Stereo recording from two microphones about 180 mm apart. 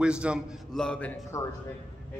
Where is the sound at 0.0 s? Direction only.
5° right (ahead or behind).